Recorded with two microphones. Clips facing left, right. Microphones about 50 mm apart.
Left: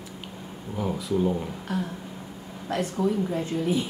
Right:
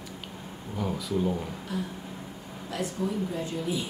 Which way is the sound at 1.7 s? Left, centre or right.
Left.